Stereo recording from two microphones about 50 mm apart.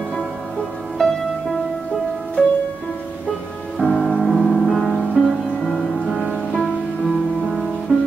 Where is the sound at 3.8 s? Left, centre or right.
Left.